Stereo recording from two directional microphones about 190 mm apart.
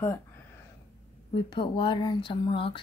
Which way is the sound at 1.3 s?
25° left (ahead or behind).